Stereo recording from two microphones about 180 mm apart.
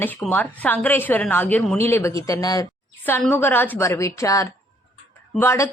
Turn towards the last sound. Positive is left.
turn(degrees=15)  # may be behind; listen again after turning